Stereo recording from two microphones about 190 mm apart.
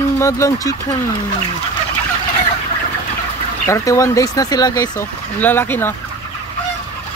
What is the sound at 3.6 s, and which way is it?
Speech, 15° left (ahead or behind).